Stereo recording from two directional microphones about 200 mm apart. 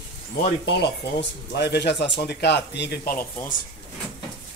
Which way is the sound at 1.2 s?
55° left (ahead or behind).